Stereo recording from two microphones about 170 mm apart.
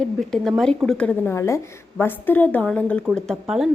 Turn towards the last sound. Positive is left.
turn(degrees=0)  # may be behind; listen again after turning